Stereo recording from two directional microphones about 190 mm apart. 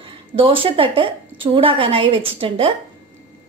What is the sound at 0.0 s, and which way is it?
A woman's voice, 30° right (ahead or behind).